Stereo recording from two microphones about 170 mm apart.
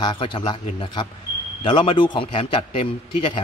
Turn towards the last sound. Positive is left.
turn(degrees=30)  # may be behind; listen again after turning